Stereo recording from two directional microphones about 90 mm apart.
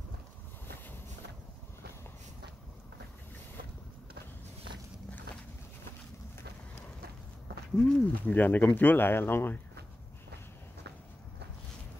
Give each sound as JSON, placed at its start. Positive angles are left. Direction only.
{"t": 7.7, "sound": "speech", "side_deg": 10}